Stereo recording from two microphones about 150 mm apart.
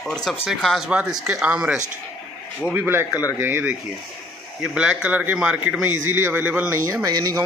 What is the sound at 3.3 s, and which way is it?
Speech, 15° right (ahead or behind).